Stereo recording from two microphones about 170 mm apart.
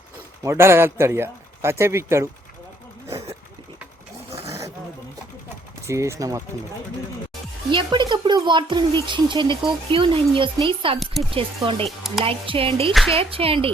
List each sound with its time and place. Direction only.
0.4 s speech: 15° right (ahead or behind)
4.4 s roaring cats: 15° right (ahead or behind)
5.8 s speech: 15° right (ahead or behind)
7.7 s speech: 25° right (ahead or behind)
11.9 s speech: centre (ahead or behind)
12.2 s speech: 35° right (ahead or behind)
12.9 s speech: centre (ahead or behind)
13.1 s speech: 35° right (ahead or behind)